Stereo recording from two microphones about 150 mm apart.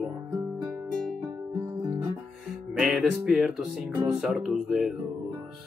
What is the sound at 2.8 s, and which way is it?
Speech, 5° right (ahead or behind).